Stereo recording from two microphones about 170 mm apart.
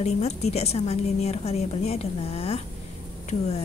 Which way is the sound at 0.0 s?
40° left (ahead or behind).